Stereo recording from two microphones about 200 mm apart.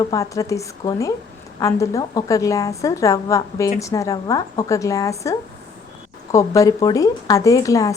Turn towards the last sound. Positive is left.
turn(degrees=15)  # may be behind; listen again after turning